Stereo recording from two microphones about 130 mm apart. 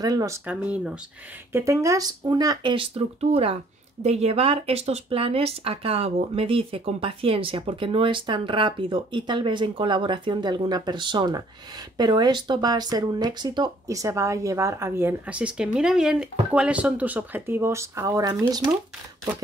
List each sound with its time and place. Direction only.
0.0 s speech: 25° right (ahead or behind)
0.5 s speech: 10° right (ahead or behind)
1.5 s speech: 25° right (ahead or behind)